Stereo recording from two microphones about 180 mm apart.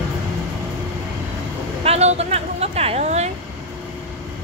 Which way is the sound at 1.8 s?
35° right (ahead or behind).